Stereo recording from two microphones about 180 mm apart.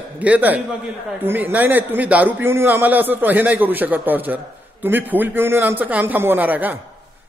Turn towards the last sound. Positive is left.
turn(degrees=-10)  # may be behind; listen again after turning